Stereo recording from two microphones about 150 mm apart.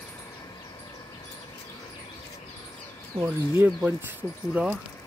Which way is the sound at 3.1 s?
15° right (ahead or behind).